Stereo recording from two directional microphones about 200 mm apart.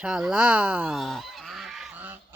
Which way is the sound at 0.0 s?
5° right (ahead or behind).